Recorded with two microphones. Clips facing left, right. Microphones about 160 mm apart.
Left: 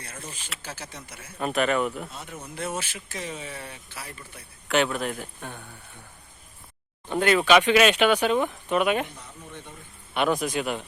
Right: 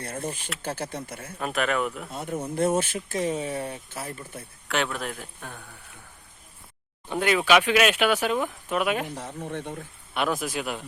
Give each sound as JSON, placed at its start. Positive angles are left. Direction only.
{"t": 0.0, "sound": "speech", "side_deg": -55}
{"t": 1.4, "sound": "speech", "side_deg": 0}
{"t": 2.0, "sound": "speech", "side_deg": -50}
{"t": 4.7, "sound": "speech", "side_deg": 0}
{"t": 7.1, "sound": "speech", "side_deg": -5}
{"t": 9.1, "sound": "speech", "side_deg": -85}
{"t": 10.2, "sound": "speech", "side_deg": 0}